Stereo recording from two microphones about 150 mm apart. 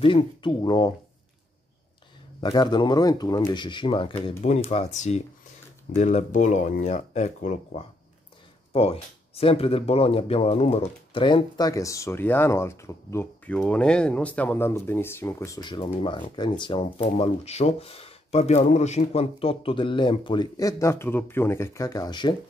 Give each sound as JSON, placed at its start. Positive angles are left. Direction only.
{"t": 0.0, "sound": "speech", "side_deg": 35}
{"t": 2.4, "sound": "speech", "side_deg": 30}
{"t": 4.4, "sound": "speech", "side_deg": 50}